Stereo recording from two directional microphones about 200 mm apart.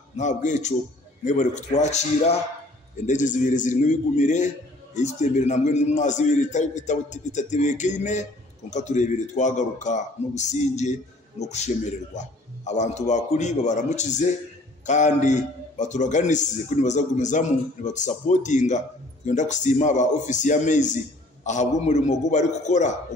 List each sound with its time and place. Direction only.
0.2 s a man's voice: 40° left (ahead or behind)